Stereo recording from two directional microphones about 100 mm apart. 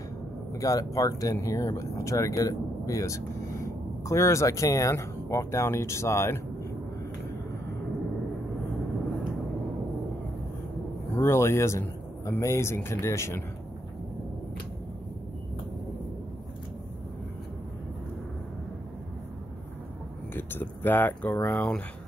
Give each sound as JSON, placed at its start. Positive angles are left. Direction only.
{"t": 0.6, "sound": "speech", "side_deg": 35}
{"t": 11.1, "sound": "speech", "side_deg": 25}
{"t": 20.3, "sound": "speech", "side_deg": 20}